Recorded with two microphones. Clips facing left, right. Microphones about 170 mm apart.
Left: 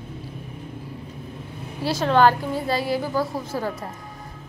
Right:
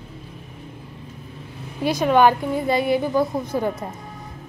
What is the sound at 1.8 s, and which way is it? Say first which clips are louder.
A woman's voice: right 2 dB; 15° right (ahead or behind).